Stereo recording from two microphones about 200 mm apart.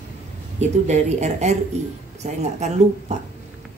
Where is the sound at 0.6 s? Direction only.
35° right (ahead or behind).